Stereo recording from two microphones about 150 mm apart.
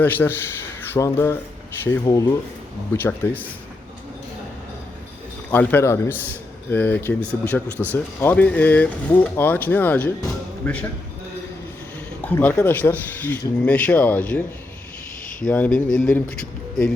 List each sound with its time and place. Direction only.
0.0 s speech: 15° left (ahead or behind)
5.5 s speech: 15° left (ahead or behind)
12.2 s speech: 10° left (ahead or behind)
15.4 s speech: 10° left (ahead or behind)